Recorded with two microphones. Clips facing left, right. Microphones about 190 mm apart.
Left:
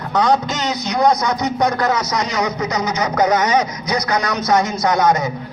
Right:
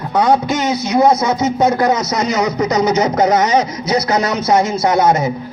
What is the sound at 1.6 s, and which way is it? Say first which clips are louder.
Speech: right 4 dB; 20° right (ahead or behind).